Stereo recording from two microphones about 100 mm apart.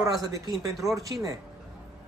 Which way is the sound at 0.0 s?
35° right (ahead or behind).